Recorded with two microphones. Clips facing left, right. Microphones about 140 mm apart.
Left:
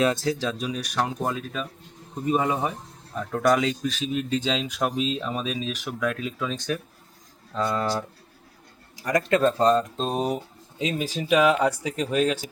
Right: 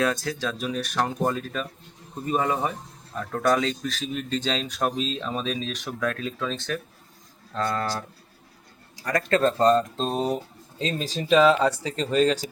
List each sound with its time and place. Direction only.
0.3 s speech: 20° left (ahead or behind)
0.9 s speech: centre (ahead or behind)
9.0 s speech: 15° left (ahead or behind)